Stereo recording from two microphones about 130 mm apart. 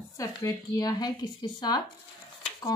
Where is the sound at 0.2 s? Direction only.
25° left (ahead or behind).